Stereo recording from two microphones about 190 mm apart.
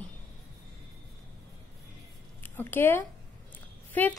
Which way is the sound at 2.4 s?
10° left (ahead or behind).